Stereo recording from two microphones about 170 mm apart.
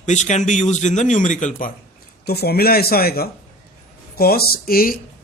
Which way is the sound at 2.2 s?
70° left (ahead or behind).